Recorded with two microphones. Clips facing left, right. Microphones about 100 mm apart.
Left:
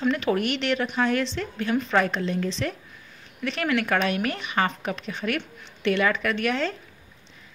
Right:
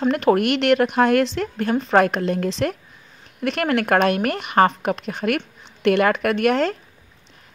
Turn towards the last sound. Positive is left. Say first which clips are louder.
# right 7 dB
turn(degrees=-55)  # may be behind; listen again after turning